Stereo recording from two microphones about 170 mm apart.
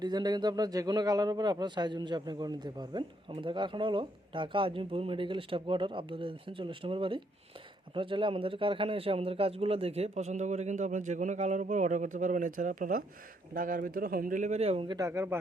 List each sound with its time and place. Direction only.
0.0 s a man's voice: 25° right (ahead or behind)
14.9 s speech: 15° right (ahead or behind)